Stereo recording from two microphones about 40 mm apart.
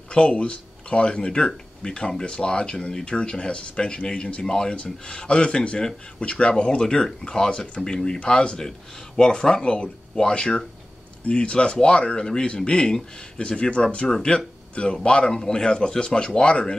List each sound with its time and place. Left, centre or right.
0.1 s speech: left
2.9 s speech: centre
13.5 s speech: left
14.0 s speech: centre